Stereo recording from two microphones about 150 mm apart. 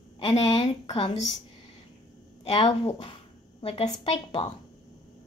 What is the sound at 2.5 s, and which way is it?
A woman's voice, 30° left (ahead or behind).